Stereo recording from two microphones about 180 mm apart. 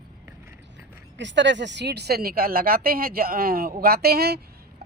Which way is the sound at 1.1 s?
85° right.